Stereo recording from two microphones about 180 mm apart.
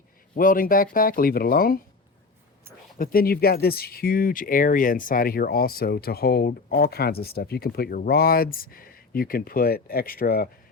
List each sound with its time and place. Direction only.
0.3 s speech: 50° left (ahead or behind)
3.0 s speech: 55° left (ahead or behind)